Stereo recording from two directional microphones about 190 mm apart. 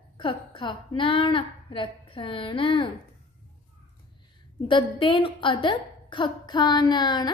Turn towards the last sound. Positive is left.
turn(degrees=20)  # may be behind; listen again after turning